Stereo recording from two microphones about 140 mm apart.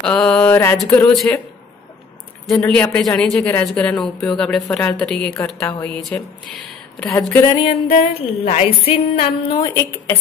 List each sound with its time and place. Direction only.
0.0 s a sound: 5° left (ahead or behind)
0.8 s a woman's voice: 10° left (ahead or behind)
2.7 s a woman's voice: 10° left (ahead or behind)
5.6 s speech: 20° left (ahead or behind)
5.9 s speech: 5° left (ahead or behind)
7.1 s speech: 20° left (ahead or behind)
7.6 s music: 45° left (ahead or behind)
9.8 s speech: 20° left (ahead or behind)